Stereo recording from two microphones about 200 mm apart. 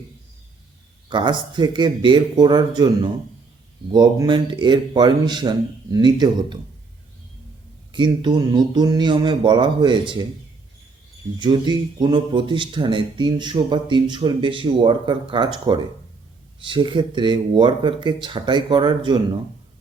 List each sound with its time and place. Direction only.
1.1 s speech: 25° right (ahead or behind)
7.9 s speech: 25° right (ahead or behind)
11.3 s speech: 25° right (ahead or behind)